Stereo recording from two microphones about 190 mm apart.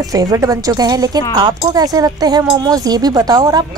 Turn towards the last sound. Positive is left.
turn(degrees=-20)  # may be behind; listen again after turning